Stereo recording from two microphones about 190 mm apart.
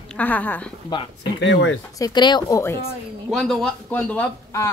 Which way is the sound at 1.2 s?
70° left (ahead or behind).